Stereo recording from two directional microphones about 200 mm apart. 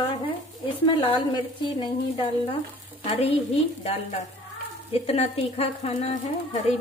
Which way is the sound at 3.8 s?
35° left (ahead or behind).